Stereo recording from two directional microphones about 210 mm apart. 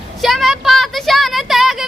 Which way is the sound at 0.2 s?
Centre (ahead or behind).